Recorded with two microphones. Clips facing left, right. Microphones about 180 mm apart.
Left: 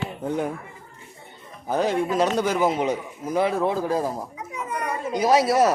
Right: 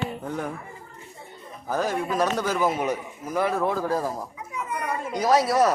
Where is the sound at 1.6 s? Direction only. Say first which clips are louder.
Left 3 dB; 25° left (ahead or behind).